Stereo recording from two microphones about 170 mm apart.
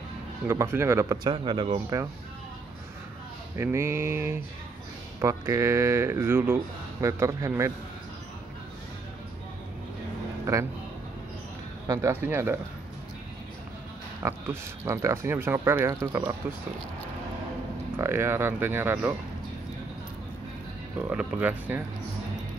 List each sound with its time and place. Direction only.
0.5 s speech: 15° right (ahead or behind)
3.5 s speech: 15° right (ahead or behind)
10.4 s a man's voice: 15° right (ahead or behind)
11.9 s speech: 15° right (ahead or behind)
14.2 s speech: 15° right (ahead or behind)
17.9 s speech: 15° right (ahead or behind)
21.0 s speech: 5° right (ahead or behind)